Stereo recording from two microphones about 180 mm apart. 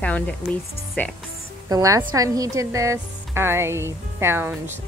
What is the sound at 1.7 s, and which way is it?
A woman's voice, 20° right (ahead or behind).